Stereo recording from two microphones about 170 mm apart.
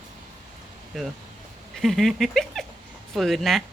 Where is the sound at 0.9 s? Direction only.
Centre (ahead or behind).